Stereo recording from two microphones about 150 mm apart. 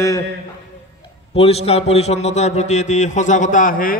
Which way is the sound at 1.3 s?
45° left (ahead or behind).